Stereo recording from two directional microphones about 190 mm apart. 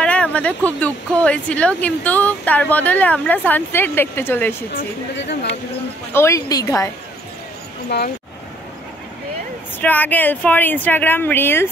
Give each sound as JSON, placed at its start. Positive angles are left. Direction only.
{"t": 0.0, "sound": "speech", "side_deg": 5}
{"t": 4.7, "sound": "a woman's voice", "side_deg": 65}
{"t": 6.1, "sound": "speech", "side_deg": 15}
{"t": 9.8, "sound": "speech", "side_deg": 10}